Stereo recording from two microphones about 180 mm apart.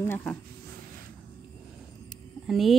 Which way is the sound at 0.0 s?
10° left (ahead or behind).